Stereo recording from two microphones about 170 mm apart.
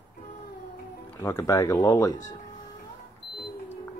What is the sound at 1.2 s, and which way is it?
Speech, 15° left (ahead or behind).